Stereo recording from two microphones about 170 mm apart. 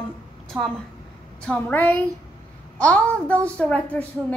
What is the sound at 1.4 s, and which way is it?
A woman's voice, 10° left (ahead or behind).